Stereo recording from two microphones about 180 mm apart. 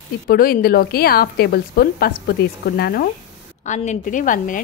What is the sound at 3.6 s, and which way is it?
Speech, 40° left (ahead or behind).